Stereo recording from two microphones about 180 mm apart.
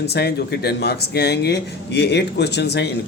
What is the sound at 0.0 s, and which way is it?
Speech, 65° left (ahead or behind).